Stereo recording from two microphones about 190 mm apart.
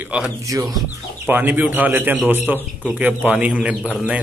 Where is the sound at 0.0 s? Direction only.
10° right (ahead or behind).